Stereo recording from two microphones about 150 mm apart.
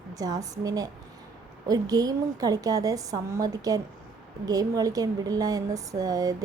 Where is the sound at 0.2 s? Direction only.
25° right (ahead or behind).